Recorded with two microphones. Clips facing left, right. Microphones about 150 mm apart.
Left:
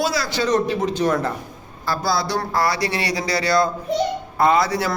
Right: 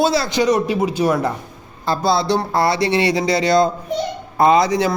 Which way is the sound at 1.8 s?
25° right (ahead or behind).